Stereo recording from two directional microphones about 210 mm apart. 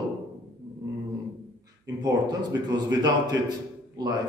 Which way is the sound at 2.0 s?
20° right (ahead or behind).